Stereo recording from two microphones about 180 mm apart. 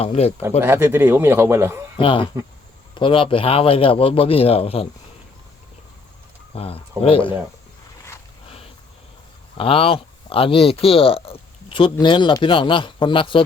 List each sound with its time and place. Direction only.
0.0 s a man's voice: 35° left (ahead or behind)
0.6 s a man's voice: 15° right (ahead or behind)
2.0 s a man's voice: 30° left (ahead or behind)
6.5 s a man's voice: 30° left (ahead or behind)
8.4 s a sound: 30° left (ahead or behind)
9.6 s speech: 30° left (ahead or behind)